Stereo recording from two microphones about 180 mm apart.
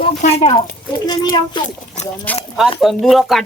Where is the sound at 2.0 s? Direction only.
40° left (ahead or behind).